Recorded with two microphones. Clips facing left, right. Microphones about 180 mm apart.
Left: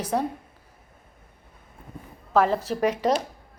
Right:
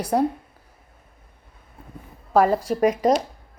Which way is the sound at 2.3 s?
10° right (ahead or behind).